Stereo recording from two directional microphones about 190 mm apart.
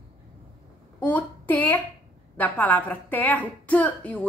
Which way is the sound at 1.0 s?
10° left (ahead or behind).